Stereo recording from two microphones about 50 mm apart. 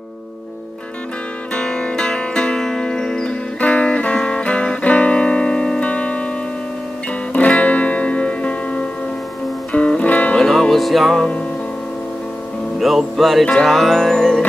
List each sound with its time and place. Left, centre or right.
1.5 s music: centre
3.5 s music: left
7.3 s music: left
10.3 s music: centre
11.1 s music: left
12.7 s music: centre